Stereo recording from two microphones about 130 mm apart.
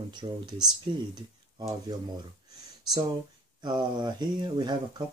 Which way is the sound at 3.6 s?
35° right (ahead or behind).